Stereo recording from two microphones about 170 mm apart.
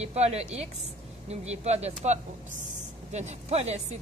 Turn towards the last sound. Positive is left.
turn(degrees=-40)  # may be behind; listen again after turning